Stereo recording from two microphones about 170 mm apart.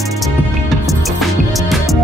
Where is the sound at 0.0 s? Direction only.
Centre (ahead or behind).